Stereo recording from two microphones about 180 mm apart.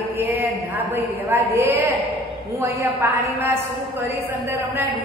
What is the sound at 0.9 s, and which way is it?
A woman's voice, 10° right (ahead or behind).